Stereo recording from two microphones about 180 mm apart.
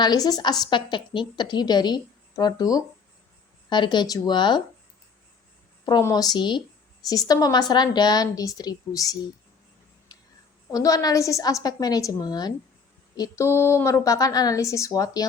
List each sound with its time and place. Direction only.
0.0 s a woman's voice: 20° left (ahead or behind)
5.8 s a woman's voice: 20° left (ahead or behind)
10.1 s a sound: 20° left (ahead or behind)
10.7 s a woman's voice: 20° left (ahead or behind)